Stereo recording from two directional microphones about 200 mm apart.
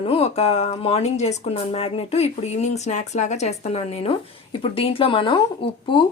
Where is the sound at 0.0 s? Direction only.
30° left (ahead or behind).